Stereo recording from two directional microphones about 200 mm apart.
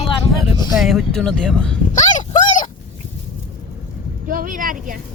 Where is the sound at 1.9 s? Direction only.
40° left (ahead or behind).